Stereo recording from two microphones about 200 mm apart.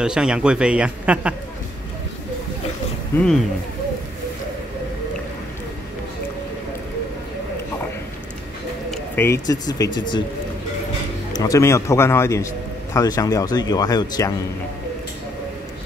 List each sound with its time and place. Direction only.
0.0 s speech: 5° right (ahead or behind)
3.2 s speech: centre (ahead or behind)
8.9 s speech: 10° left (ahead or behind)
11.3 s speech: 15° left (ahead or behind)